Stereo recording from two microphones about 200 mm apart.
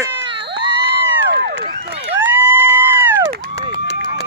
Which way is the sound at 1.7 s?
35° right (ahead or behind).